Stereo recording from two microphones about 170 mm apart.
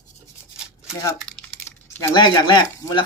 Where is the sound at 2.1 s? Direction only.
25° left (ahead or behind).